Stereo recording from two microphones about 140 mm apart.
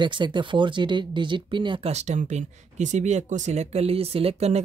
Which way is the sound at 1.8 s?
55° right (ahead or behind).